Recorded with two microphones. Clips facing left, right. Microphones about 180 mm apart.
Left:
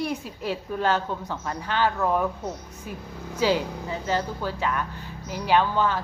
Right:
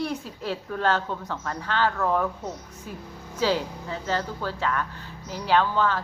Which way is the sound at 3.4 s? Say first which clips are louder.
Left 2 dB; 15° left (ahead or behind).